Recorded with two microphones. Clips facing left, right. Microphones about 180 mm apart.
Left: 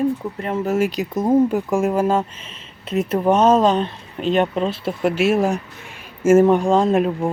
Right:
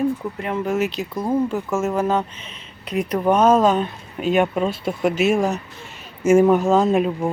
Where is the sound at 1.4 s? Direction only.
15° left (ahead or behind).